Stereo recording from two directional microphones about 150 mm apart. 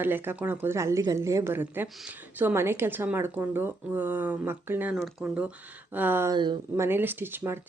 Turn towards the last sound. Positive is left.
turn(degrees=-15)  # may be behind; listen again after turning